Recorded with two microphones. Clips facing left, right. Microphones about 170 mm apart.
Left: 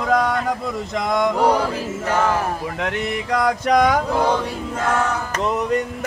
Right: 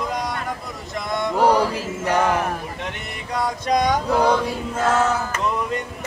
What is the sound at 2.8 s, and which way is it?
Speech, 90° left.